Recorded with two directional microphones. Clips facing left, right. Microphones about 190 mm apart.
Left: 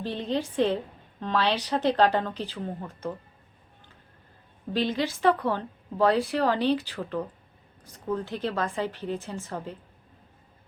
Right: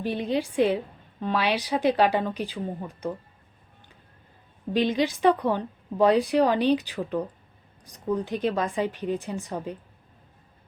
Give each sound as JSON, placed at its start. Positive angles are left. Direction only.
{"t": 0.0, "sound": "speech", "side_deg": -10}
{"t": 4.7, "sound": "speech", "side_deg": -15}